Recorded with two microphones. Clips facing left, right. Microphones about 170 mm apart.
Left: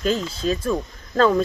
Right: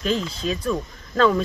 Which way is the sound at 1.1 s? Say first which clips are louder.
Left 1 dB; 35° left (ahead or behind).